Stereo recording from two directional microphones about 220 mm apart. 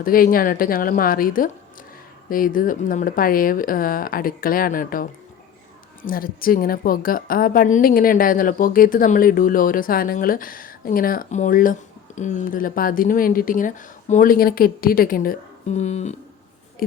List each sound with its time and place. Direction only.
0.0 s a woman's voice: 40° left (ahead or behind)